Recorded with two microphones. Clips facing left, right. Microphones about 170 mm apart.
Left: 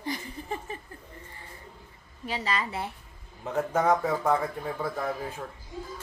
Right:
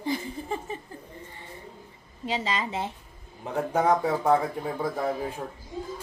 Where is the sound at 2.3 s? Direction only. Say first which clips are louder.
Right 2 dB; 20° right (ahead or behind).